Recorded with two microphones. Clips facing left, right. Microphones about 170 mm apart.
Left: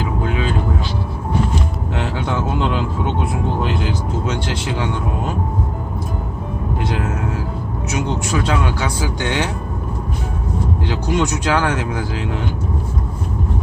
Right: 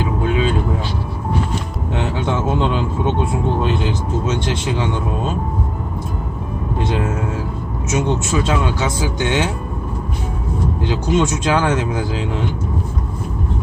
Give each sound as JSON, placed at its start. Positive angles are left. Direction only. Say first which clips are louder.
{"t": 0.0, "sound": "vehicle", "louder": "right 3 dB", "side_deg": -20}
{"t": 2.0, "sound": "speech", "louder": "right 2 dB", "side_deg": -25}
{"t": 6.7, "sound": "speech", "louder": "right 3 dB", "side_deg": -25}
{"t": 10.8, "sound": "speech", "louder": "right 3 dB", "side_deg": -25}